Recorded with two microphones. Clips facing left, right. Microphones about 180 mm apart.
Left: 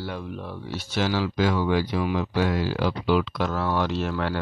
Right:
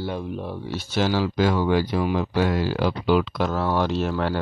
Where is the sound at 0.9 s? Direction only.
35° right (ahead or behind).